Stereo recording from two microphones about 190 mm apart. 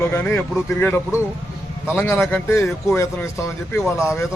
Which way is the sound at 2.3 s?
15° left (ahead or behind).